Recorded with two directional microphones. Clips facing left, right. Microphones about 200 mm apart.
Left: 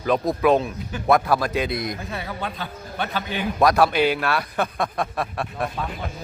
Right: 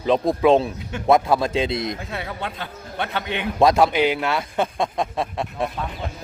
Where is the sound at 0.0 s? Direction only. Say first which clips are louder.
Right 2 dB; 25° right (ahead or behind).